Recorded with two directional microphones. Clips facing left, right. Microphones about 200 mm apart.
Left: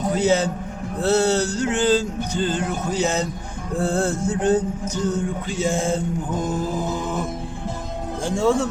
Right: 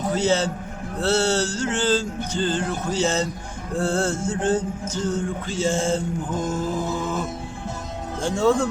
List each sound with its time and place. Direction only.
0.1 s music: 15° left (ahead or behind)